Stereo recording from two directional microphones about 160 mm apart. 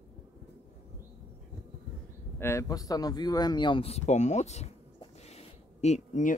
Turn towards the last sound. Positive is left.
turn(degrees=50)  # may be behind; listen again after turning